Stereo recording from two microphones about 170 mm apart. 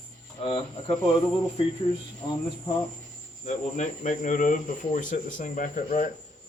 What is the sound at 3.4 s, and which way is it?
Speech, 45° left (ahead or behind).